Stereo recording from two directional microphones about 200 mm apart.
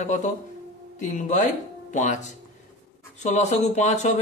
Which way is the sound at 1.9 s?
35° left (ahead or behind).